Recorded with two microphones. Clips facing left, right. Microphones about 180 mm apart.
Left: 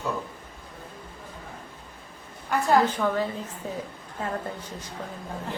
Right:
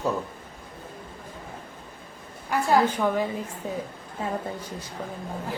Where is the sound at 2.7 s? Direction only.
10° right (ahead or behind).